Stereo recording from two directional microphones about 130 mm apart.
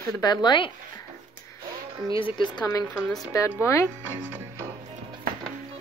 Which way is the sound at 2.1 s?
40° left (ahead or behind).